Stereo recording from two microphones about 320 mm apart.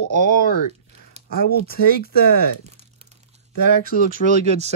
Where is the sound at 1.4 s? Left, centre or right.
Left.